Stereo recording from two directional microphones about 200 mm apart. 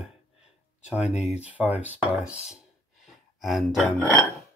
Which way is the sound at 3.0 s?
Centre (ahead or behind).